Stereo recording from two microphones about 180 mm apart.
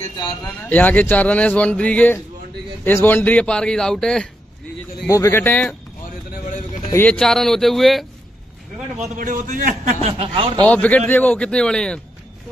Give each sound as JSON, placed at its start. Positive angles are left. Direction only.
{"t": 0.7, "sound": "a man's voice", "side_deg": 10}
{"t": 5.1, "sound": "speech", "side_deg": 15}
{"t": 6.9, "sound": "a man's voice", "side_deg": 10}
{"t": 9.1, "sound": "a man's voice", "side_deg": -45}
{"t": 10.0, "sound": "speech", "side_deg": -30}
{"t": 10.7, "sound": "speech", "side_deg": 10}